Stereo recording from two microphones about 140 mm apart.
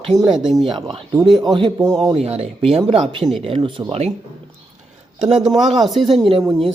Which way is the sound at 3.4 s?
40° right (ahead or behind).